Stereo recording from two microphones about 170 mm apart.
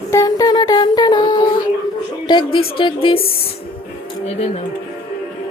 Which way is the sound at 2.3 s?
30° left (ahead or behind).